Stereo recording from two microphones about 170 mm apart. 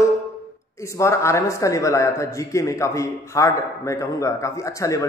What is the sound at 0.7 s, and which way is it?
A man's voice, 15° left (ahead or behind).